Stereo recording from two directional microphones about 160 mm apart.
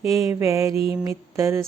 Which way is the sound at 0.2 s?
20° right (ahead or behind).